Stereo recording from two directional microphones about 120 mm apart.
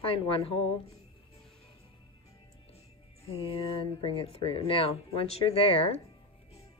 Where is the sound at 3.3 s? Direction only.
50° left (ahead or behind).